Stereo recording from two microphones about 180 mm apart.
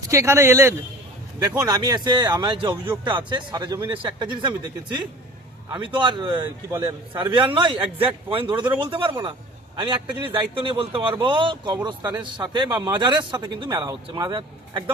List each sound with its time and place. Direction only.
0.1 s a man's voice: 15° right (ahead or behind)